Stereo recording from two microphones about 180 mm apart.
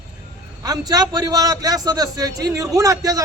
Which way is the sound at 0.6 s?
20° right (ahead or behind).